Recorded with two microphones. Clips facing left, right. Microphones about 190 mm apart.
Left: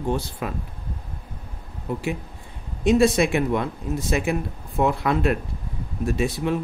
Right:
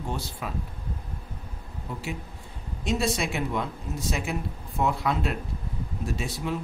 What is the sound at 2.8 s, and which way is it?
Speech, 55° left (ahead or behind).